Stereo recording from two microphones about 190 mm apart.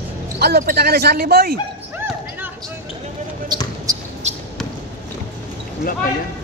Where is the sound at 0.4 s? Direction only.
55° right (ahead or behind).